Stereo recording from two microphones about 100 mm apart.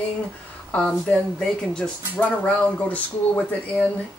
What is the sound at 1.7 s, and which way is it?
Speech, 10° left (ahead or behind).